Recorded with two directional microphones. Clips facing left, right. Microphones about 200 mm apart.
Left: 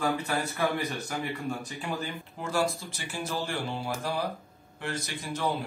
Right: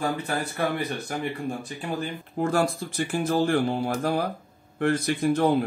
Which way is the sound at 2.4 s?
55° right (ahead or behind).